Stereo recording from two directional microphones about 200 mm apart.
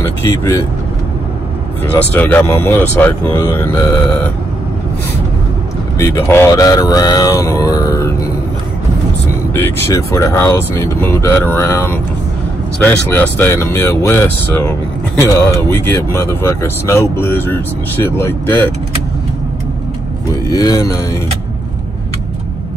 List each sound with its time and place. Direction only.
0.0 s speech: 15° left (ahead or behind)
2.0 s speech: 10° left (ahead or behind)
5.9 s speech: 10° left (ahead or behind)
9.5 s speech: 10° left (ahead or behind)
20.4 s speech: 15° left (ahead or behind)